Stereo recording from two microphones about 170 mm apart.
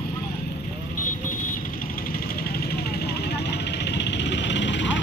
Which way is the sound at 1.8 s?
60° left (ahead or behind).